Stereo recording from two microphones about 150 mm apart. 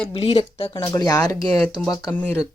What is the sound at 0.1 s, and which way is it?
Speech, 40° left (ahead or behind).